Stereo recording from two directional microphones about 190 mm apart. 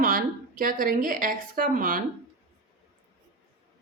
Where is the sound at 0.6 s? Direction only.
45° right (ahead or behind).